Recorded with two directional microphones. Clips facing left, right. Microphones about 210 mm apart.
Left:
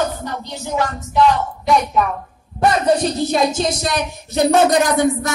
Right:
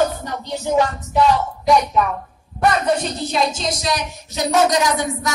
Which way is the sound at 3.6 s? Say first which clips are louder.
Left 3 dB; 55° left (ahead or behind).